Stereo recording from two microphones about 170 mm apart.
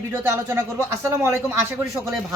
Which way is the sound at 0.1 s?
15° right (ahead or behind).